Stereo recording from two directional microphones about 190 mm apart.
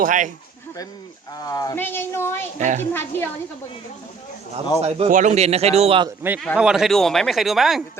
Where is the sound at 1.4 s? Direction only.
20° left (ahead or behind).